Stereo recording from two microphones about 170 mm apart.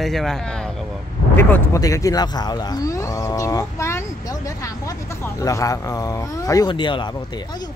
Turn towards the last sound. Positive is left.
turn(degrees=25)  # may be behind; listen again after turning